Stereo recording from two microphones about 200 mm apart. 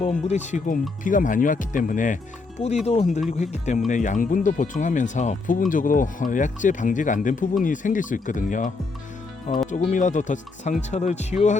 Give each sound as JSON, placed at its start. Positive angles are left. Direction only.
{"t": 0.0, "sound": "speech", "side_deg": 35}